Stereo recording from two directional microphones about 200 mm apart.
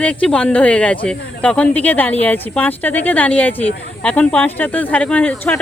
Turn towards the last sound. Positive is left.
turn(degrees=10)  # may be behind; listen again after turning